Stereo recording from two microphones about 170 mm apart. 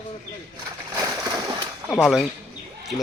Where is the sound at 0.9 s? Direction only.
20° right (ahead or behind).